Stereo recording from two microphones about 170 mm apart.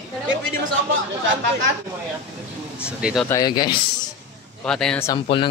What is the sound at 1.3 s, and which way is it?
Speech, 90° right.